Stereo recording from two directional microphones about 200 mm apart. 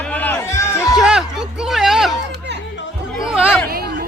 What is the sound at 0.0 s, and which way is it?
Run, 10° left (ahead or behind).